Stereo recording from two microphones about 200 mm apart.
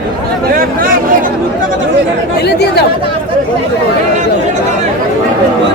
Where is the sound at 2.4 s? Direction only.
55° left (ahead or behind).